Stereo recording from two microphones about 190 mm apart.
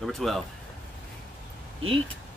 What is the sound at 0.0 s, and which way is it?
Speech, centre (ahead or behind).